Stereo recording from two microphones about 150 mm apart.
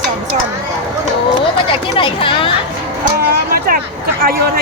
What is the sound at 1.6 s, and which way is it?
Chatter, 35° left (ahead or behind).